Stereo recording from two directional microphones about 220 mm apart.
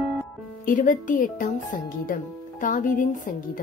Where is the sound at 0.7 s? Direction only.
35° left (ahead or behind).